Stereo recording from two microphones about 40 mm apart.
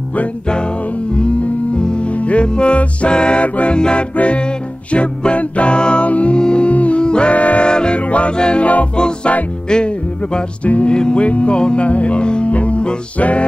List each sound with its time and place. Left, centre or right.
1.8 s music: left
6.0 s music: left
6.3 s music: left
7.6 s music: left
10.6 s music: left